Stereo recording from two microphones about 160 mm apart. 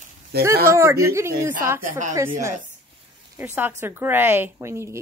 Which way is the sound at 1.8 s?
55° right (ahead or behind).